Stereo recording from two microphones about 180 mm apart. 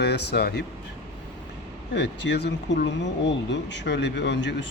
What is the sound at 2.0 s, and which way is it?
A man's voice, 75° left (ahead or behind).